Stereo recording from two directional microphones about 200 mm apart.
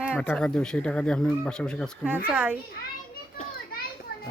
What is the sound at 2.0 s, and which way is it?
Speech, 5° right (ahead or behind).